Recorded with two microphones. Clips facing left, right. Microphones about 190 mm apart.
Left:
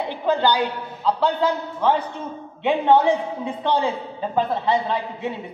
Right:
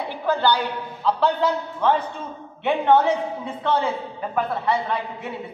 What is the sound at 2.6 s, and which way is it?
A man's voice, 15° left (ahead or behind).